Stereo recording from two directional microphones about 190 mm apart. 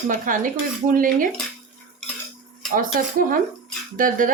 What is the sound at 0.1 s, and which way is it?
Speech, 45° right (ahead or behind).